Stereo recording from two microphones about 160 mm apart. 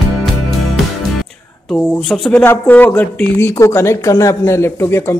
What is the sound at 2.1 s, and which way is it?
Speech, 5° left (ahead or behind).